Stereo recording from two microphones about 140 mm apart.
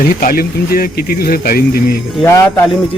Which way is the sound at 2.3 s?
15° left (ahead or behind).